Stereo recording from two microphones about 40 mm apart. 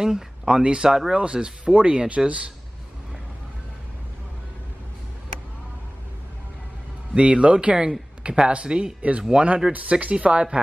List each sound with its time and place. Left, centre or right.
0.0 s speech: centre
1.1 s speech: right
7.2 s speech: right